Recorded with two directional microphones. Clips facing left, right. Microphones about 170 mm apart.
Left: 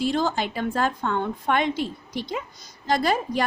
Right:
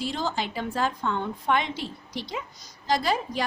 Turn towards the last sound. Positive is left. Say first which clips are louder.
# left 3 dB
turn(degrees=55)  # may be behind; listen again after turning